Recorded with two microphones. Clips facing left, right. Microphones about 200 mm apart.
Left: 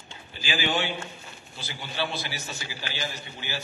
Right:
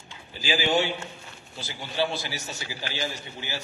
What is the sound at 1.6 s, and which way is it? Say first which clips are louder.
A man's voice: right 4 dB; 40° right (ahead or behind).